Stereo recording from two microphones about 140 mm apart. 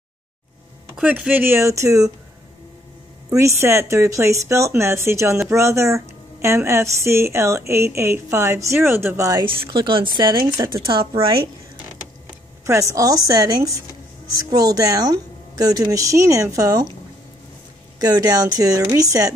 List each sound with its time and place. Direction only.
0.9 s speech: 5° right (ahead or behind); by 2.1 s 25° right (ahead or behind)
3.3 s a woman's voice: 20° right (ahead or behind)
9.5 s speech: 35° right (ahead or behind)
10.6 s a woman's voice: 25° right (ahead or behind)
12.6 s a woman's voice: 20° right (ahead or behind)
17.9 s a woman's voice: 25° right (ahead or behind)